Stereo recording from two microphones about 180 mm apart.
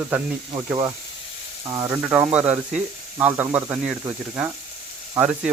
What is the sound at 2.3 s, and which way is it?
Speech, 10° right (ahead or behind).